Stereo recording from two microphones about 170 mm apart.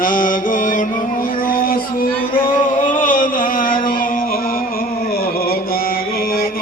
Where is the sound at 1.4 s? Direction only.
55° left (ahead or behind).